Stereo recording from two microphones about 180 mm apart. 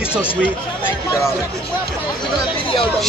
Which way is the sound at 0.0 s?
5° right (ahead or behind).